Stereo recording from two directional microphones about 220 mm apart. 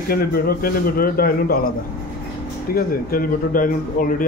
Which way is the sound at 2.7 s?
40° left (ahead or behind).